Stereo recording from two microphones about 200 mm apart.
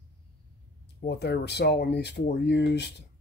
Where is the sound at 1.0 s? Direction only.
55° left (ahead or behind).